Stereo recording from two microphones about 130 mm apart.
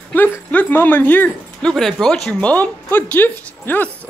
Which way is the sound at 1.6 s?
5° left (ahead or behind).